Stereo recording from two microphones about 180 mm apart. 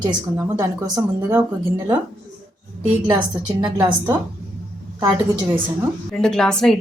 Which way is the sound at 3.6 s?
20° right (ahead or behind).